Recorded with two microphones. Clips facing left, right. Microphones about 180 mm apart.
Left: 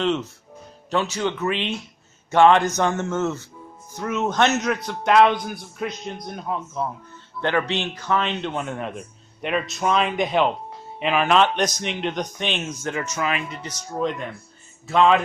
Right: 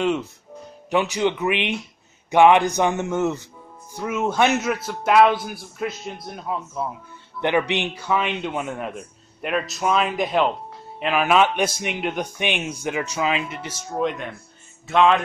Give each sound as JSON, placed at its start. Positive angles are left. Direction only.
{"t": 0.0, "sound": "a man's voice", "side_deg": -10}
{"t": 7.4, "sound": "a man's voice", "side_deg": -15}
{"t": 13.7, "sound": "a man's voice", "side_deg": -5}